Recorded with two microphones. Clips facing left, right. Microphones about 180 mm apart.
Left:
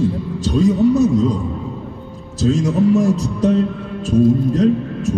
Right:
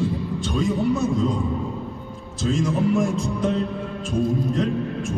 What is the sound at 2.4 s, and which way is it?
Speech, 40° left (ahead or behind).